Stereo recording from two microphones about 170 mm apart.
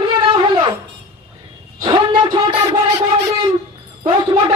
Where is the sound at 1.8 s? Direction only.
25° right (ahead or behind).